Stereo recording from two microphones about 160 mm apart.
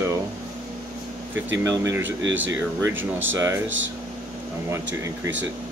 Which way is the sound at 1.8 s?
15° right (ahead or behind).